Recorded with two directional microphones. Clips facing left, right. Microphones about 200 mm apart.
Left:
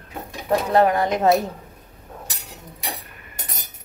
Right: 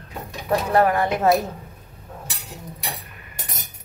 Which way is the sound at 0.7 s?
20° left (ahead or behind).